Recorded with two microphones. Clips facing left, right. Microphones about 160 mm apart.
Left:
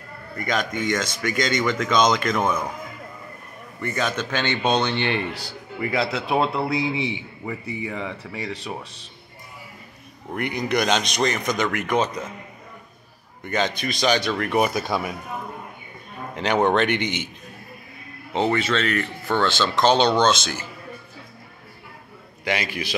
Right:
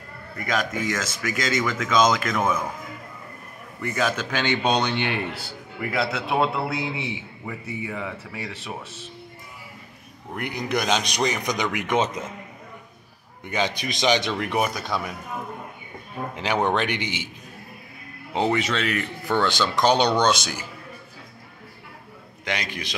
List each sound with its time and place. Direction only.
0.5 s a man's voice: 5° right (ahead or behind)
3.8 s a man's voice: 5° right (ahead or behind)
10.3 s speech: centre (ahead or behind); by 12.1 s 20° right (ahead or behind)
13.4 s speech: 10° right (ahead or behind)
14.6 s speech: 5° left (ahead or behind)
16.6 s speech: 10° right (ahead or behind)
16.9 s a man's voice: 50° left (ahead or behind)
18.3 s speech: 15° right (ahead or behind)
22.4 s a man's voice: 5° left (ahead or behind)